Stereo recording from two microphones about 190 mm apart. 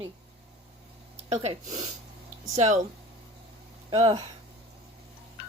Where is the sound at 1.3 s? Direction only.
35° right (ahead or behind).